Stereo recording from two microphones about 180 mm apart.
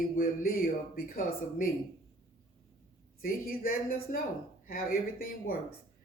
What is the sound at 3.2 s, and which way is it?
A man's voice, 55° left (ahead or behind).